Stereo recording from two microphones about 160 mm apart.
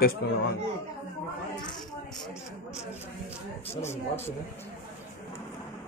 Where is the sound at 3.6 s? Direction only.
40° left (ahead or behind).